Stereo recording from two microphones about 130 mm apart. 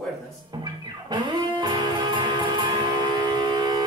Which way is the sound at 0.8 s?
30° right (ahead or behind).